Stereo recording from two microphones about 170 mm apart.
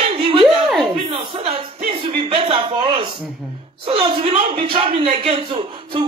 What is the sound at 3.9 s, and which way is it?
A man's voice, 35° right (ahead or behind).